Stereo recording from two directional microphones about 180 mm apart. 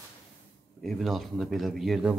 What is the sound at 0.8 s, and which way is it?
Speech, centre (ahead or behind).